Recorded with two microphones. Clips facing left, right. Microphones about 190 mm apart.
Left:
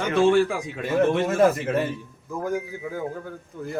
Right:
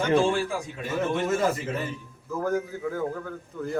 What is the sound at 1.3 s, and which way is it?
Speech, 60° left (ahead or behind).